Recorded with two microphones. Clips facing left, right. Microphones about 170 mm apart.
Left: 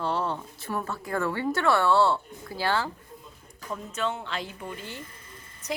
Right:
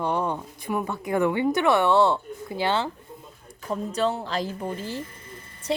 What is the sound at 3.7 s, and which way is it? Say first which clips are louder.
Speech: right 6 dB; 35° right (ahead or behind).